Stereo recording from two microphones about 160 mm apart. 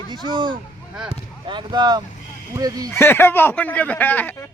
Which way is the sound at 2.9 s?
15° left (ahead or behind).